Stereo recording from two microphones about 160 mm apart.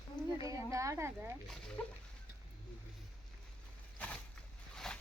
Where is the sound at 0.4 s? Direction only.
20° right (ahead or behind).